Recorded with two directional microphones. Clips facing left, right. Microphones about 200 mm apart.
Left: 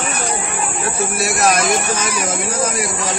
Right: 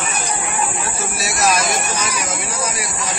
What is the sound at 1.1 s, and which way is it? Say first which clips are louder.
Snake: left 2 dB; 55° left (ahead or behind).